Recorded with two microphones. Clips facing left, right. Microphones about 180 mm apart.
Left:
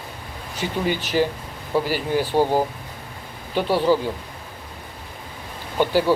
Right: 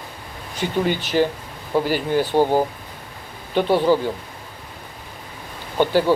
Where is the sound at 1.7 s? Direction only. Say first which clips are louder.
Right 2 dB; 15° right (ahead or behind).